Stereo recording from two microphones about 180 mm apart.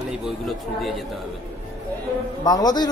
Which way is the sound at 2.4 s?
20° left (ahead or behind).